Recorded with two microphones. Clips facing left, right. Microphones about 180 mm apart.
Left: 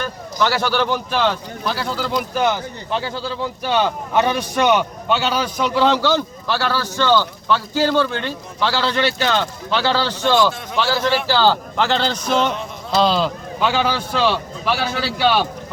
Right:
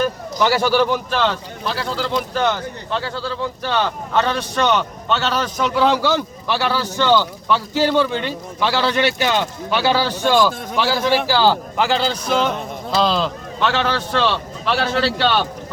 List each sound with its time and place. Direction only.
0.3 s a man's voice: 15° right (ahead or behind); by 15.4 s 5° left (ahead or behind)